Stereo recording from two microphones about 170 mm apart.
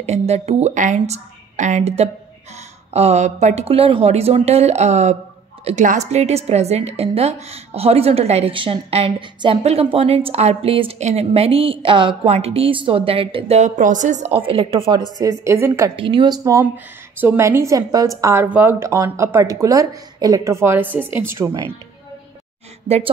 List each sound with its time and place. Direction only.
0.0 s a woman's voice: 40° right (ahead or behind)
15.4 s a woman's voice: 15° right (ahead or behind)
16.0 s a woman's voice: 30° right (ahead or behind)